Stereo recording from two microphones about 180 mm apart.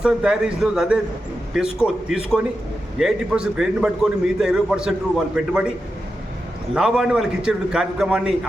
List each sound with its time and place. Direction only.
0.0 s a man's voice: 5° right (ahead or behind)
2.0 s a man's voice: 5° right (ahead or behind)
6.7 s a man's voice: 5° right (ahead or behind)